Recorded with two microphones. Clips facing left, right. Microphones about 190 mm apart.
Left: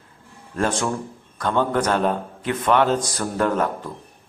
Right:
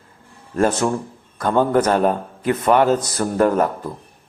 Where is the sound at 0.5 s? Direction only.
5° right (ahead or behind).